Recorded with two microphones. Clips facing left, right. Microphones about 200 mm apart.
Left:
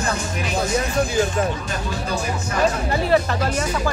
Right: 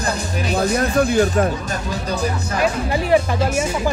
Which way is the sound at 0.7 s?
60° right (ahead or behind).